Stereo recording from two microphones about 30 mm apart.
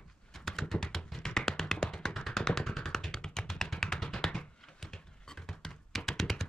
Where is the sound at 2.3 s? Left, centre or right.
Centre.